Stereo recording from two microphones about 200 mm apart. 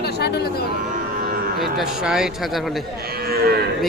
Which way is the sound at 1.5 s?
Centre (ahead or behind).